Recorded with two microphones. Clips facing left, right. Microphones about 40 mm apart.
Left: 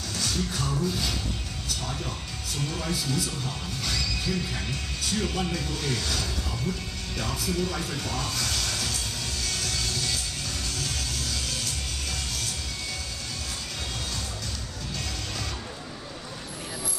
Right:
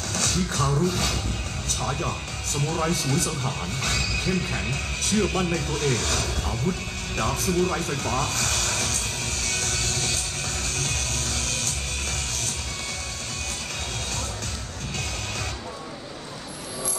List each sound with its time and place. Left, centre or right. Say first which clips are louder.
0.1 s music: right 3 dB; right
1.8 s speech: right 9 dB; right
7.2 s music: right 6 dB; right